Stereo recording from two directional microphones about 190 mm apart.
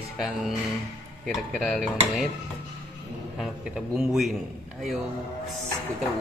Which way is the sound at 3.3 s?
5° right (ahead or behind).